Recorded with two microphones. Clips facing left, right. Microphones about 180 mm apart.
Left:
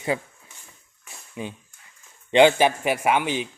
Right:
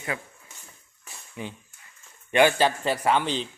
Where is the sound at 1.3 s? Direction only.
20° left (ahead or behind).